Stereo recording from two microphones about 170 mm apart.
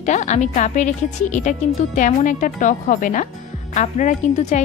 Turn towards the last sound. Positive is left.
turn(degrees=45)  # may be behind; listen again after turning